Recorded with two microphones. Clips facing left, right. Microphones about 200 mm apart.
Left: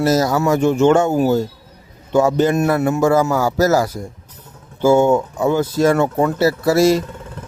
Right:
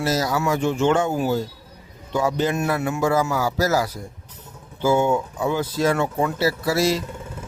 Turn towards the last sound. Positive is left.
turn(degrees=50)  # may be behind; listen again after turning